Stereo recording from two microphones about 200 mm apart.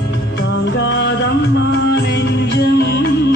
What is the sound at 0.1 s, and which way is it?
Music, 60° left (ahead or behind).